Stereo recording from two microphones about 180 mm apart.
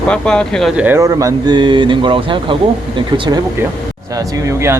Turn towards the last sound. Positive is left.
turn(degrees=-15)  # may be behind; listen again after turning